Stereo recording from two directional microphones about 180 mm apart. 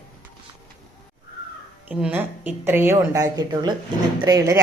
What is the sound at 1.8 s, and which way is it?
A woman's voice, 5° right (ahead or behind).